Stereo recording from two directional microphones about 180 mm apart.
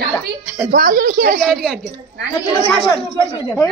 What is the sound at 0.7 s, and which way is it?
Speech, 50° right (ahead or behind).